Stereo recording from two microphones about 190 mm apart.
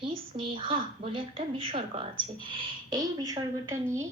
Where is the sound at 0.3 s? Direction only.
30° right (ahead or behind).